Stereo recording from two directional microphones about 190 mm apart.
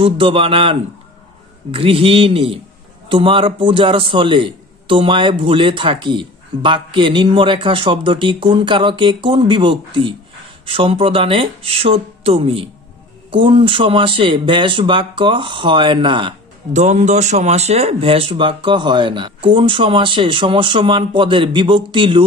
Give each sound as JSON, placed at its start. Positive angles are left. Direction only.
{"t": 0.0, "sound": "speech", "side_deg": -30}